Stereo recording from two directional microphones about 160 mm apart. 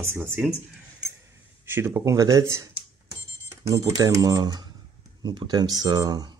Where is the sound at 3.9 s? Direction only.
20° right (ahead or behind).